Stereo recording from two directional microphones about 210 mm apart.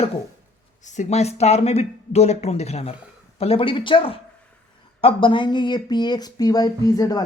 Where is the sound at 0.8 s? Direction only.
35° left (ahead or behind).